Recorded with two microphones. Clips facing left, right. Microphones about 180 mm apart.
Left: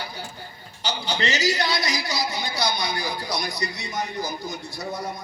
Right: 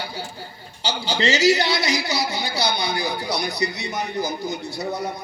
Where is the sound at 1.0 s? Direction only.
25° right (ahead or behind).